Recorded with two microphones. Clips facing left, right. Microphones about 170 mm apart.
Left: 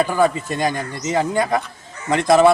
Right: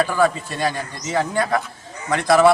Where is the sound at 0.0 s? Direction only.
15° left (ahead or behind).